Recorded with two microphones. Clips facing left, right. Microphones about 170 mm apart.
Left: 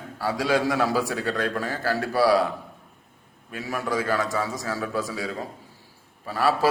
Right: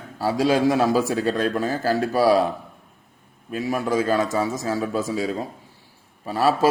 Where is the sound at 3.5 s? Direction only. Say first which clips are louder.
Right 5 dB; 20° right (ahead or behind).